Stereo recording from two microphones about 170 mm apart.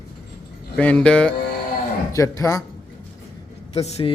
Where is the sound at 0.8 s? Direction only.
5° left (ahead or behind).